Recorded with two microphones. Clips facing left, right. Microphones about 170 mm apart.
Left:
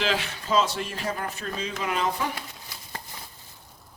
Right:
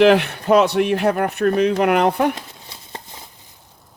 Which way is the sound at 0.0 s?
60° right (ahead or behind).